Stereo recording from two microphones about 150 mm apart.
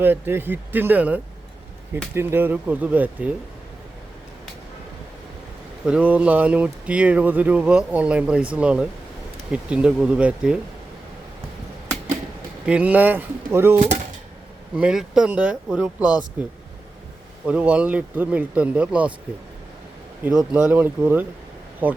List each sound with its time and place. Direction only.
0.0 s speech: 15° right (ahead or behind)
5.8 s speech: 5° right (ahead or behind)
12.6 s speech: 10° right (ahead or behind)
13.7 s speech: 50° right (ahead or behind)
14.8 s speech: 5° right (ahead or behind)
17.4 s speech: 10° right (ahead or behind)
20.5 s speech: 10° right (ahead or behind)